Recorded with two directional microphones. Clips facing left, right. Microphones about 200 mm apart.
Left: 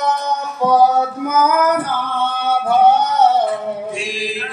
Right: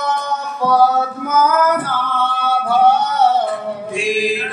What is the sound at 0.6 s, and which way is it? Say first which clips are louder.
Female singing: left 1 dB; 20° left (ahead or behind).